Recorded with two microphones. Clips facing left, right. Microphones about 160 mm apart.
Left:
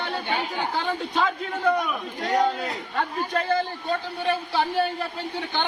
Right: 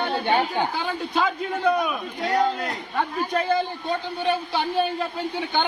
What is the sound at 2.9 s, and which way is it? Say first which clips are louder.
A man's voice: right 2 dB; 15° right (ahead or behind).